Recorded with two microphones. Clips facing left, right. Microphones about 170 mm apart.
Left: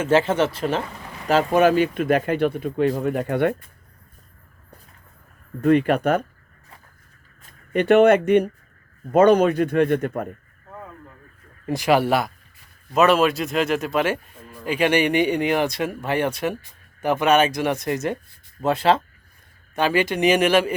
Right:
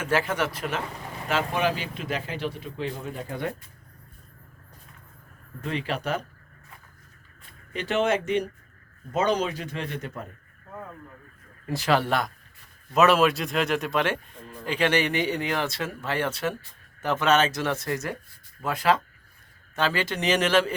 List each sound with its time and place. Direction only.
0.0 s speech: 25° left (ahead or behind)
1.3 s speech: 40° left (ahead or behind)
3.0 s speech: 65° left (ahead or behind)
5.6 s speech: 55° left (ahead or behind)
7.7 s speech: 60° left (ahead or behind)
11.6 s a man's voice: 15° left (ahead or behind)
19.7 s a man's voice: 15° left (ahead or behind)